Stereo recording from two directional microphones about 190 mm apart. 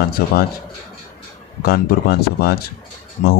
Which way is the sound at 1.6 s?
50° left (ahead or behind).